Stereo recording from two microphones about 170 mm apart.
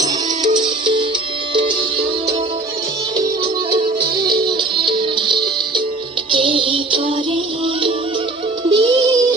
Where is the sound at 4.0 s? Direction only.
60° right (ahead or behind).